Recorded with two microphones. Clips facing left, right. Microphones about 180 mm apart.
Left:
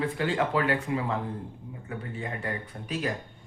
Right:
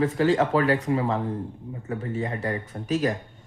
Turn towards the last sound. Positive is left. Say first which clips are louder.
# right 7 dB
turn(degrees=-40)  # may be behind; listen again after turning